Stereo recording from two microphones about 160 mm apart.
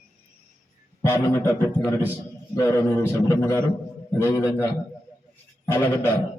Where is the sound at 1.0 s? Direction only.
20° left (ahead or behind).